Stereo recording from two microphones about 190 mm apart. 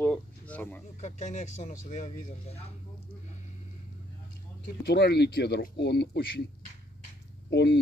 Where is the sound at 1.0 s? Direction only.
40° left (ahead or behind).